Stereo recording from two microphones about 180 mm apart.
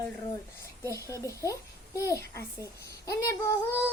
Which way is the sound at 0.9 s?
15° left (ahead or behind).